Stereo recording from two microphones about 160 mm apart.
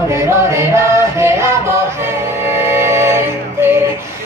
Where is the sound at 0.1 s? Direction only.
15° right (ahead or behind).